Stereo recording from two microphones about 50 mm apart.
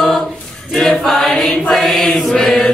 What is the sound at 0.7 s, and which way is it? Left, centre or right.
Choir, centre.